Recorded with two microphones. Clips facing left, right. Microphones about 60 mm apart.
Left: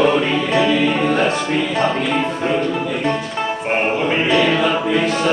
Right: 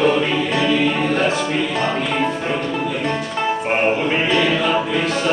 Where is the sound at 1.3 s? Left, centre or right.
Centre.